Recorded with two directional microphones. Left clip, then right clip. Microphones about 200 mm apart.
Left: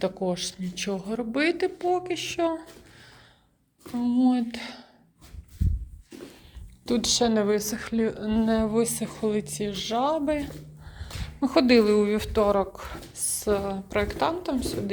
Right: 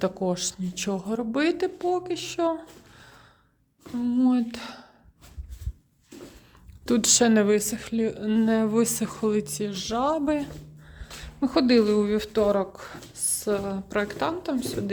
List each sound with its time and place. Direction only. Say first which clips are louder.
0.0 s speech: right 1 dB; 30° right (ahead or behind)
4.0 s humming: even; 30° right (ahead or behind)
6.8 s a woman's voice: right 2 dB; 40° right (ahead or behind)